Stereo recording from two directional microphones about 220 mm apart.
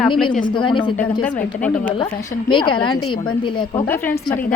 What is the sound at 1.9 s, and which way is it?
A woman's voice, 20° left (ahead or behind).